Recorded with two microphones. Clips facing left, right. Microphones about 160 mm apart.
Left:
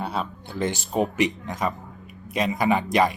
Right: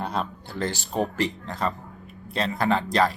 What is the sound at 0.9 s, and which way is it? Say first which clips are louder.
A man's voice: left 3 dB; 20° left (ahead or behind).